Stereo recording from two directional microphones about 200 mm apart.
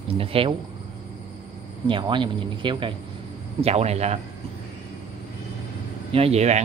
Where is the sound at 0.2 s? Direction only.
30° right (ahead or behind).